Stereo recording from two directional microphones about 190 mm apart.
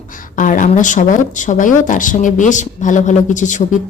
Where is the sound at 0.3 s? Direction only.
45° left (ahead or behind).